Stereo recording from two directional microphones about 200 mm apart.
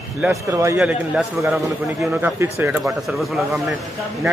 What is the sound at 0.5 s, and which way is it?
Speech, 15° right (ahead or behind).